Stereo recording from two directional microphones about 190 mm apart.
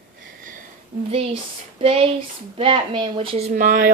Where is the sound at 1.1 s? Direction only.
30° right (ahead or behind).